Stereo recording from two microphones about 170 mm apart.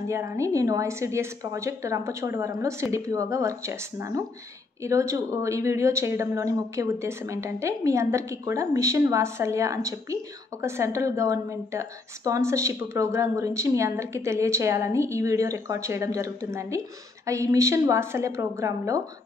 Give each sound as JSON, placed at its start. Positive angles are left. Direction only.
{"t": 0.1, "sound": "a woman's voice", "side_deg": -15}